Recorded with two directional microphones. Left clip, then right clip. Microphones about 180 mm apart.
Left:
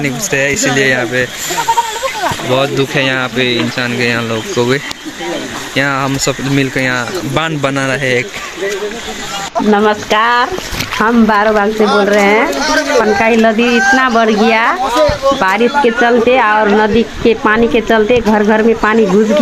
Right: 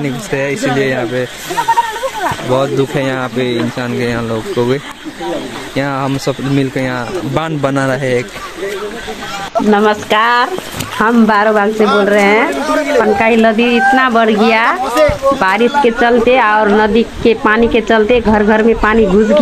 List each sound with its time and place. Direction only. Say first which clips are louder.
0.0 s speech: left 3 dB; 5° right (ahead or behind)
2.5 s speech: left 1 dB; 5° right (ahead or behind)
5.8 s speech: left 3 dB; 5° right (ahead or behind)
7.7 s speech: even; 20° right (ahead or behind)
9.7 s speech: even; centre (ahead or behind)